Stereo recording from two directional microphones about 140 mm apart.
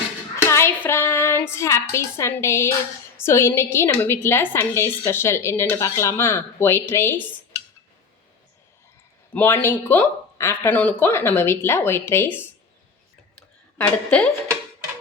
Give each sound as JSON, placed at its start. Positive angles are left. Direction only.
{"t": 0.4, "sound": "child singing", "side_deg": 20}
{"t": 3.2, "sound": "a woman's voice", "side_deg": 20}
{"t": 9.3, "sound": "a woman's voice", "side_deg": 15}
{"t": 13.7, "sound": "a woman's voice", "side_deg": 10}